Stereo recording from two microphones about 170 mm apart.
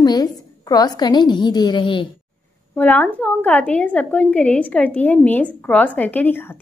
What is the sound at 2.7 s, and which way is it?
Speech, 10° left (ahead or behind).